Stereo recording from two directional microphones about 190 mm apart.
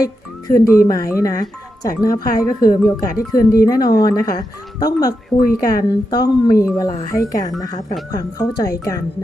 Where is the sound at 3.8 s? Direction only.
55° left (ahead or behind).